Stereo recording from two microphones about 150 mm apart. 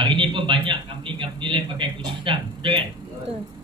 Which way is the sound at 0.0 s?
35° right (ahead or behind).